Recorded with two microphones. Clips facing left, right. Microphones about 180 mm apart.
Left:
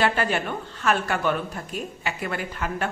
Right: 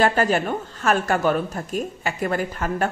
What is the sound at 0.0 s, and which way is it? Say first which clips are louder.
A woman's voice: right 4 dB; 40° right (ahead or behind).